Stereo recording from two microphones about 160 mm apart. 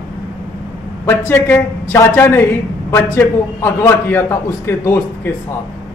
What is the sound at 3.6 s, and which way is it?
A man's voice, 15° left (ahead or behind).